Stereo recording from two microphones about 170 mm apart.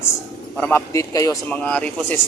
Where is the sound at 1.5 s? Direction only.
5° left (ahead or behind).